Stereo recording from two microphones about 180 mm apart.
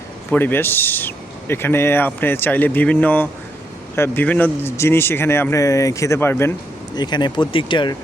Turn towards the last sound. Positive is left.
turn(degrees=25)  # may be behind; listen again after turning